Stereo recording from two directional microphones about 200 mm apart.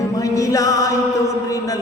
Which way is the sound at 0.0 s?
15° left (ahead or behind).